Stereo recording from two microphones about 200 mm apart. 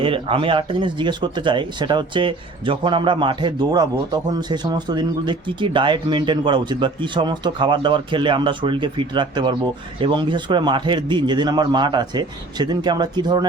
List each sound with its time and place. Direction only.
0.0 s speech: 25° right (ahead or behind)